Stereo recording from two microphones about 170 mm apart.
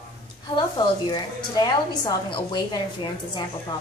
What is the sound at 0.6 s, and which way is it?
A woman's voice, 25° left (ahead or behind).